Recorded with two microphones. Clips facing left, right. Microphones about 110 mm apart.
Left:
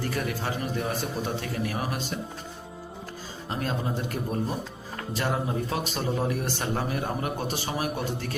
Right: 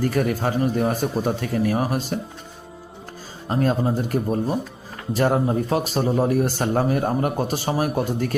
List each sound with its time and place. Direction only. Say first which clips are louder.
0.0 s speech: right 8 dB; 45° right (ahead or behind)
3.5 s speech: right 9 dB; 40° right (ahead or behind)